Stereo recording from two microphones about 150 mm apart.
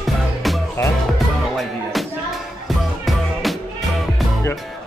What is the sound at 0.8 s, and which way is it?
Music, 15° left (ahead or behind).